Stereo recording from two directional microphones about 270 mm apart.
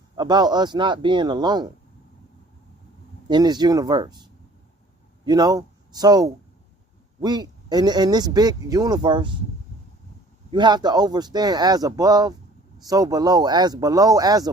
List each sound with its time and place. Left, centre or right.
0.2 s speech: centre
3.2 s speech: centre
10.5 s speech: centre